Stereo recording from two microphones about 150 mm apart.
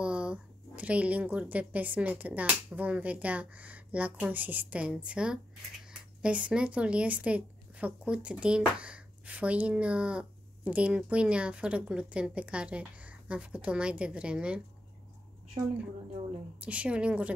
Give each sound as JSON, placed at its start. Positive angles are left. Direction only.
{"t": 0.0, "sound": "speech", "side_deg": -5}
{"t": 15.6, "sound": "a woman's voice", "side_deg": -20}
{"t": 16.6, "sound": "speech", "side_deg": -10}